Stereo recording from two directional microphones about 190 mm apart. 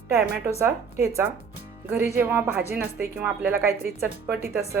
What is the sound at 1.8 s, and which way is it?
Speech, 10° right (ahead or behind).